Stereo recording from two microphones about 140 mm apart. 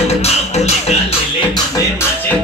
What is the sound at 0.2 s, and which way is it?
Music, 50° left (ahead or behind).